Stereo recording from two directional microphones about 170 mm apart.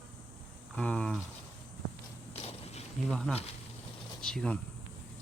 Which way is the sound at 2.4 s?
40° left (ahead or behind).